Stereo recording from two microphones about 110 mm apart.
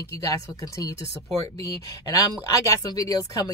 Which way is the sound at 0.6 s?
30° left (ahead or behind).